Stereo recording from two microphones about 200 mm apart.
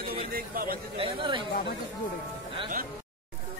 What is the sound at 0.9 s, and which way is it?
Speech, 25° right (ahead or behind).